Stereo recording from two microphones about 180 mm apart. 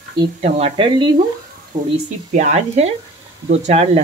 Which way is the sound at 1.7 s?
45° right (ahead or behind).